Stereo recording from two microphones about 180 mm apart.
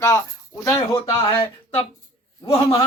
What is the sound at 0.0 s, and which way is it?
Speech, 20° left (ahead or behind).